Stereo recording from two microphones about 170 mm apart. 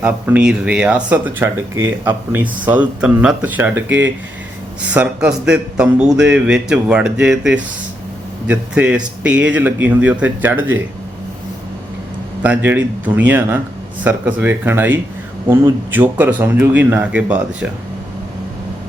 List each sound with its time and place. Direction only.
0.0 s speech: 5° right (ahead or behind)
4.9 s speech: 5° right (ahead or behind)
12.4 s speech: 10° right (ahead or behind)